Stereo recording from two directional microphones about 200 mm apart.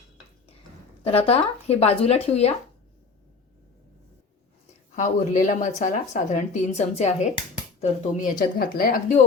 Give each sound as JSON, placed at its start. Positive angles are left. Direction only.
{"t": 1.0, "sound": "speech", "side_deg": 30}
{"t": 4.9, "sound": "speech", "side_deg": 40}